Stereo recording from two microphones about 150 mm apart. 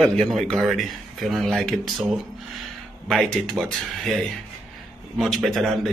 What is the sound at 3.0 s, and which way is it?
Speech, 5° left (ahead or behind).